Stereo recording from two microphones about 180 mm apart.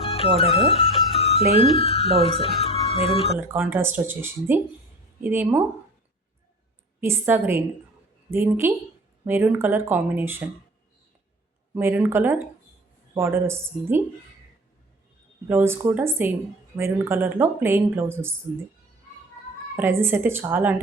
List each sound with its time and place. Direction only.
0.0 s speech: 35° left (ahead or behind)
1.1 s music: 35° left (ahead or behind)
1.7 s speech: 35° left (ahead or behind)
2.6 s music: 35° left (ahead or behind)
3.3 s speech: 10° right (ahead or behind)
7.0 s speech: 15° right (ahead or behind)
11.7 s speech: 10° right (ahead or behind)
15.4 s speech: 15° right (ahead or behind)
19.7 s speech: 15° right (ahead or behind)